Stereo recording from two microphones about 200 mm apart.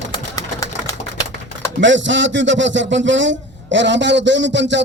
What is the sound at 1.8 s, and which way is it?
A man's voice, 65° right (ahead or behind).